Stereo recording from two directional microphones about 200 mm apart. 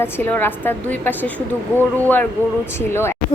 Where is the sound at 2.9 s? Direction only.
10° left (ahead or behind).